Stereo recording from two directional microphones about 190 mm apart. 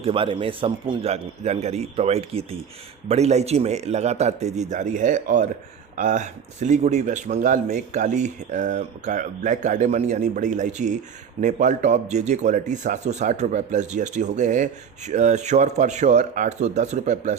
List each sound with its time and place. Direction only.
0.0 s speech: 30° right (ahead or behind)